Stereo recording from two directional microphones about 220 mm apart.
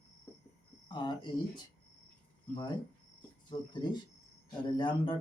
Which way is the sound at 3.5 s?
20° left (ahead or behind).